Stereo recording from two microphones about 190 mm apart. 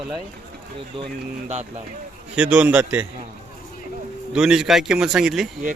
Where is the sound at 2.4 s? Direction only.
5° right (ahead or behind).